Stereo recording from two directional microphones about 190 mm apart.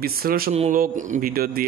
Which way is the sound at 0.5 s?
35° right (ahead or behind).